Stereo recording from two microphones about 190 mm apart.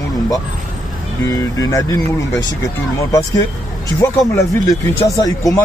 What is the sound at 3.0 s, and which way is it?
Speech, 20° left (ahead or behind).